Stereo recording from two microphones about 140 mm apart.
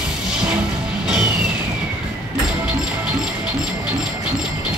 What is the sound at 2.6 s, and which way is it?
Music, 5° right (ahead or behind).